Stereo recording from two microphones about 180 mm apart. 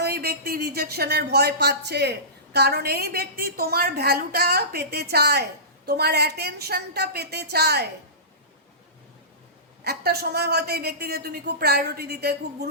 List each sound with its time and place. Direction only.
0.0 s speech: 60° right (ahead or behind)
9.8 s speech: 60° right (ahead or behind)